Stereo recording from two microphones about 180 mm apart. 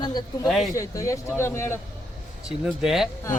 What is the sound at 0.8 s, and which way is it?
Speech, 15° left (ahead or behind).